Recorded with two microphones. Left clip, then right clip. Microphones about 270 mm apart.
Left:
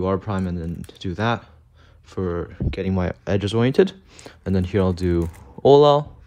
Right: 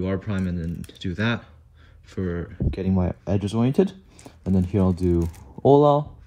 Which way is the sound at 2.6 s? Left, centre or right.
Right.